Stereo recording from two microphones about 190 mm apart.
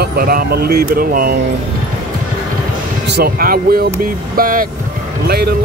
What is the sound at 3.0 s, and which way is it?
Speech, 55° right (ahead or behind).